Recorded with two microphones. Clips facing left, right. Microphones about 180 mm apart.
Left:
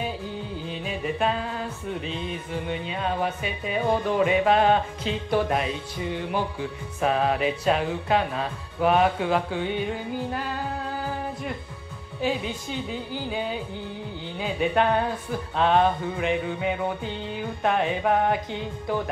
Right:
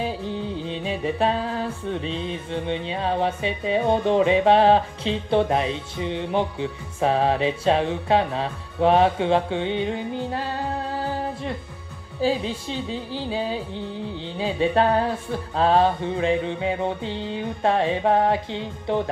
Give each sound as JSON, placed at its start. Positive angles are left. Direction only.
{"t": 0.7, "sound": "music", "side_deg": -30}